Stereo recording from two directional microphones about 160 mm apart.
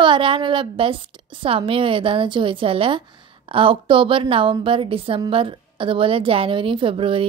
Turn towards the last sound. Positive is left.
turn(degrees=-35)  # may be behind; listen again after turning